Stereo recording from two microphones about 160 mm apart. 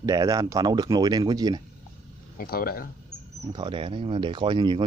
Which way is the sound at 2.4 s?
65° left (ahead or behind).